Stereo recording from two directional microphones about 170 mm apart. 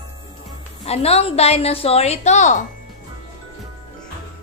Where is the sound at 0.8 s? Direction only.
35° left (ahead or behind).